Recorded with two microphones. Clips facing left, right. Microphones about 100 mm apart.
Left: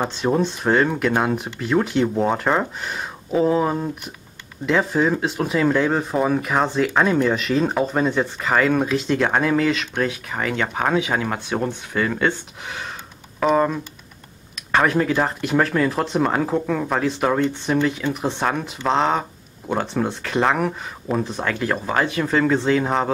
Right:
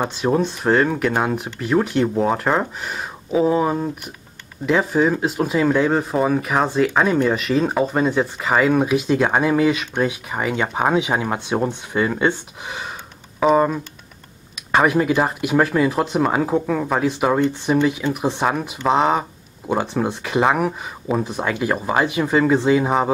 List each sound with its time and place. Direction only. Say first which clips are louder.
0.1 s speech: right 1 dB; centre (ahead or behind)